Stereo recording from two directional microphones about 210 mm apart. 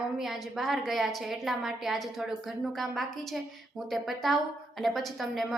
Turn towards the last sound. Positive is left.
turn(degrees=0)  # may be behind; listen again after turning